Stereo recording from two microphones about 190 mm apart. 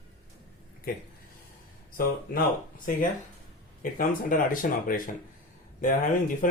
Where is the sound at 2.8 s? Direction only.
45° left (ahead or behind).